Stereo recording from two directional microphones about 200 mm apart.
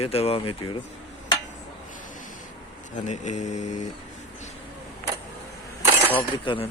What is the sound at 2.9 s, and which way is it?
Speech, 35° left (ahead or behind).